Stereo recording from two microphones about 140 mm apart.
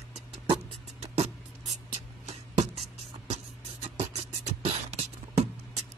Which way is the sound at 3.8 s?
50° right (ahead or behind).